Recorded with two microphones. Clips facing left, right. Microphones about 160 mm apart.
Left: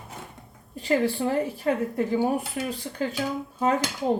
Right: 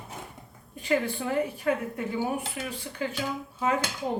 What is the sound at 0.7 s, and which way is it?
Speech, 35° left (ahead or behind).